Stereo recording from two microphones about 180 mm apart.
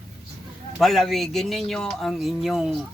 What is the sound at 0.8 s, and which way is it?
Speech, centre (ahead or behind).